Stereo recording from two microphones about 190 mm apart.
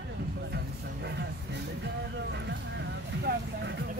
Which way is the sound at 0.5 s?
60° right (ahead or behind).